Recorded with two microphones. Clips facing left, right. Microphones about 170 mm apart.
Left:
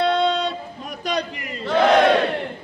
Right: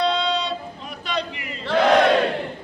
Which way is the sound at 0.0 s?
50° left (ahead or behind).